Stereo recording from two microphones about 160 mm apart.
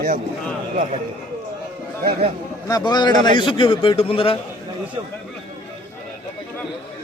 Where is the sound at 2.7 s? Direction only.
25° left (ahead or behind).